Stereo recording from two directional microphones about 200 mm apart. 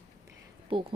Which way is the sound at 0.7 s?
25° right (ahead or behind).